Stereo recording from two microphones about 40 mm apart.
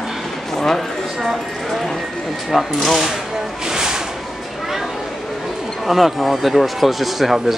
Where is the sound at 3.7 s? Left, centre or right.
Centre.